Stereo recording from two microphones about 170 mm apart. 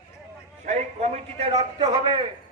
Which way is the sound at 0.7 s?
40° right (ahead or behind).